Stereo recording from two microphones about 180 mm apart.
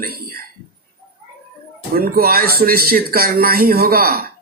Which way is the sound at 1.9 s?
55° right (ahead or behind).